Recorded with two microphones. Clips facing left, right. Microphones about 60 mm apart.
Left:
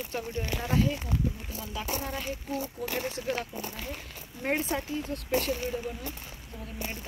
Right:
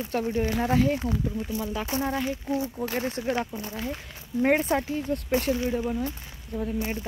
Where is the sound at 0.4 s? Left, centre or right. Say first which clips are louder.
Right 4 dB; right.